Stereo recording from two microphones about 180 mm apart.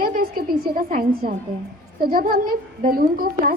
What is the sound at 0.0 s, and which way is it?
A woman's voice, 55° right (ahead or behind).